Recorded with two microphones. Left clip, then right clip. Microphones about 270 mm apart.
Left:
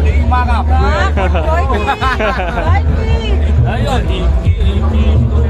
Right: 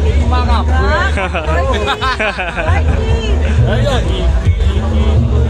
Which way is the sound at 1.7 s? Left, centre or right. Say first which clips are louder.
Left 1 dB; left.